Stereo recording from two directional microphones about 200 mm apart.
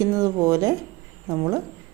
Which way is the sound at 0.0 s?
15° right (ahead or behind).